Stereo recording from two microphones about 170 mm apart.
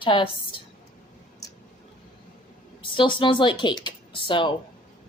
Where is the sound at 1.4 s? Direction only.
20° left (ahead or behind).